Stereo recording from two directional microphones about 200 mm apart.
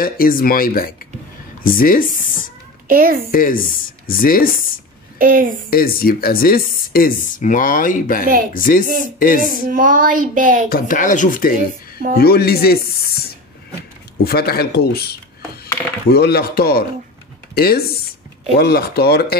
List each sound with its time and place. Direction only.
0.0 s speech: 45° left (ahead or behind)
2.9 s a woman's voice: 45° right (ahead or behind)
3.3 s speech: 45° left (ahead or behind)
5.2 s a sound: 45° right (ahead or behind)
5.7 s speech: 45° left (ahead or behind)
9.5 s a sound: 45° right (ahead or behind)
10.7 s speech: 40° left (ahead or behind)
14.2 s speech: 50° left (ahead or behind)
16.1 s speech: 50° left (ahead or behind)